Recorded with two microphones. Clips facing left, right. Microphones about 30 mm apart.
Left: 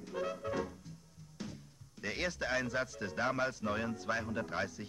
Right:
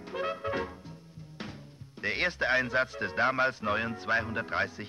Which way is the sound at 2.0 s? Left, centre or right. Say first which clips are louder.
Right 8 dB; right.